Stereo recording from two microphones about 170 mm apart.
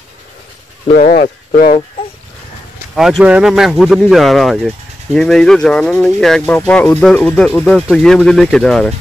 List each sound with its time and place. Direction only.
0.8 s speech: 50° left (ahead or behind)
3.0 s speech: centre (ahead or behind)